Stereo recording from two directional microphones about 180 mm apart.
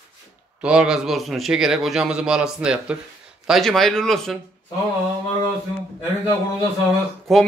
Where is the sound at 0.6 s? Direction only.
5° right (ahead or behind).